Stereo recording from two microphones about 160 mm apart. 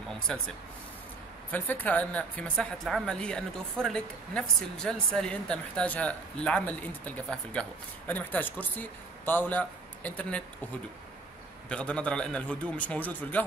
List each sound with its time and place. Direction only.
1.5 s speech: 10° left (ahead or behind)
11.7 s speech: 5° left (ahead or behind)